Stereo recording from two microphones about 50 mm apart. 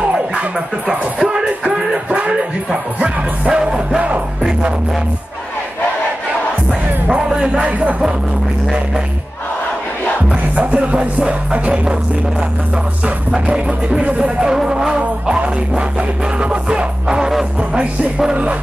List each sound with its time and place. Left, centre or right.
0.8 s speech: centre
4.4 s music: centre
7.4 s music: centre
10.5 s music: right
13.0 s music: right